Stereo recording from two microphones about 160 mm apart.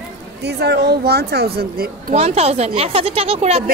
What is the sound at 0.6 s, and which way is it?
Speech, 90° right.